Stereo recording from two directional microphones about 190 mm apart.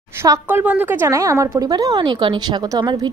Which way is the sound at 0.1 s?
15° right (ahead or behind).